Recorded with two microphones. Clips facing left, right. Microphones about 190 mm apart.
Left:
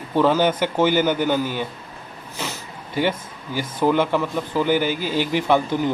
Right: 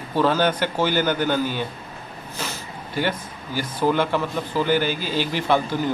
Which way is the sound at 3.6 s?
15° left (ahead or behind).